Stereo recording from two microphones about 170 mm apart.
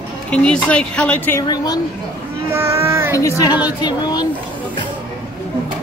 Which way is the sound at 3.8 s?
25° left (ahead or behind).